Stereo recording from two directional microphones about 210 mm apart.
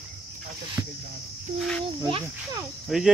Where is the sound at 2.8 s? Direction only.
Centre (ahead or behind).